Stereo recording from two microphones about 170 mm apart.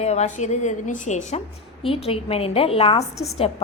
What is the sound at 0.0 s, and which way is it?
A woman's voice, 40° left (ahead or behind).